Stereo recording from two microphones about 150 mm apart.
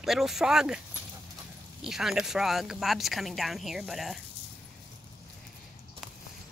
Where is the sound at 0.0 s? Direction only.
Centre (ahead or behind).